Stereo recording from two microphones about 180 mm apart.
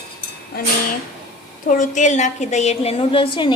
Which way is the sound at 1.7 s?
45° left (ahead or behind).